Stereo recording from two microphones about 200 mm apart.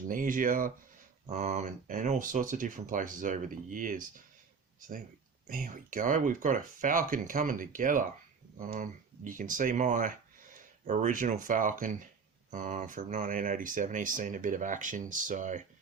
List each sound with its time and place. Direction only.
0.1 s speech: 40° right (ahead or behind)
5.5 s speech: 40° right (ahead or behind)